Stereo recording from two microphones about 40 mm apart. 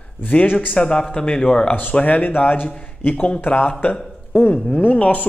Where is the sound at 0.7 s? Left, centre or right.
Centre.